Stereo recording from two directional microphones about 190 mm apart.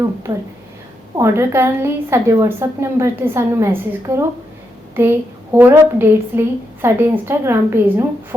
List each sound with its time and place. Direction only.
0.3 s a woman's voice: 25° right (ahead or behind)
5.5 s a woman's voice: 10° right (ahead or behind)